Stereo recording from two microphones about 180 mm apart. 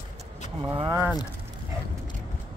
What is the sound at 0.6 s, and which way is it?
Single-lens reflex camera, 25° right (ahead or behind).